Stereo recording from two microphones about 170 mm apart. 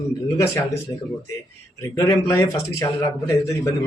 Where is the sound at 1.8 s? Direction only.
20° left (ahead or behind).